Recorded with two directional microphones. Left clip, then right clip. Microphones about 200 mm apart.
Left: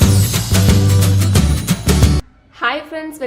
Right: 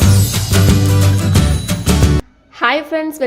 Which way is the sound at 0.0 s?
Centre (ahead or behind).